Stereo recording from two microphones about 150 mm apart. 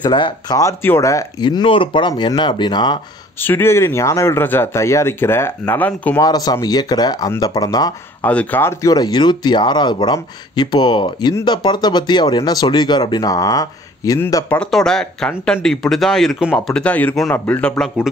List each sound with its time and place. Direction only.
0.0 s speech: 30° left (ahead or behind)
0.6 s speech: 20° left (ahead or behind)
3.3 s speech: 15° left (ahead or behind)
6.1 s speech: 25° left (ahead or behind)
8.2 s speech: 10° left (ahead or behind)
14.7 s speech: 5° left (ahead or behind)